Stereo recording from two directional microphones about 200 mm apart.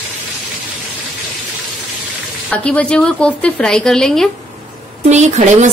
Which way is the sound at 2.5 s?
5° left (ahead or behind).